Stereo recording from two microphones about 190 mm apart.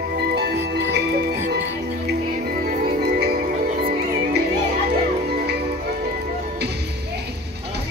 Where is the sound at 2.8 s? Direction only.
55° right (ahead or behind).